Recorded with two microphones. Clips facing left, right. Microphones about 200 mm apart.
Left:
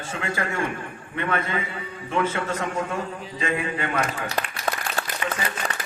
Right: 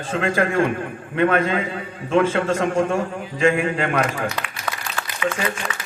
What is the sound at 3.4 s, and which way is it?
Speech, 85° right.